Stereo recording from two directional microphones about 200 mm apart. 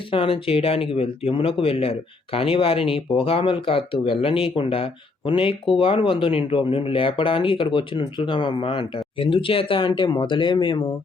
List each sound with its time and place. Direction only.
0.1 s speech: 25° left (ahead or behind)